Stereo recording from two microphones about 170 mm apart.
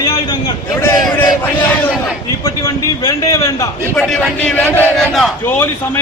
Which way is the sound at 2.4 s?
20° left (ahead or behind).